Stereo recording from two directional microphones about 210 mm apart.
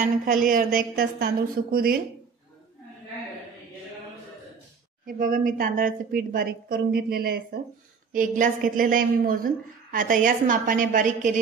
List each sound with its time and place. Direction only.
0.0 s a woman's voice: 40° right (ahead or behind)
5.0 s a woman's voice: 40° right (ahead or behind)